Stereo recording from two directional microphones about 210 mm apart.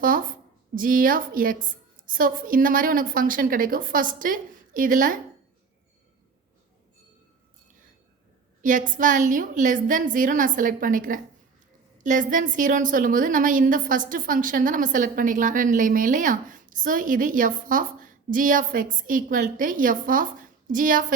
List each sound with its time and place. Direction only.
0.0 s a sound: 40° right (ahead or behind)
0.8 s a woman's voice: 40° right (ahead or behind)
8.6 s a woman's voice: 40° right (ahead or behind)